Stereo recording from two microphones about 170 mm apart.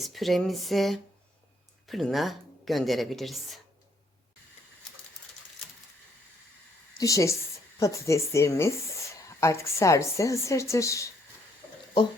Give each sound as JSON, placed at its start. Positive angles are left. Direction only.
{"t": 0.0, "sound": "speech", "side_deg": 0}
{"t": 7.0, "sound": "a woman's voice", "side_deg": 20}